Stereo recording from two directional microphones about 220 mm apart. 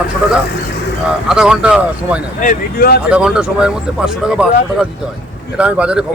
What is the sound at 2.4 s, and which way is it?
Speech, 40° left (ahead or behind).